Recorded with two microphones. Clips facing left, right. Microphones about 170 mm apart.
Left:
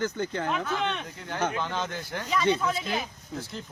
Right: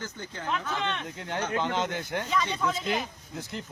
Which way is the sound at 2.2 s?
5° left (ahead or behind).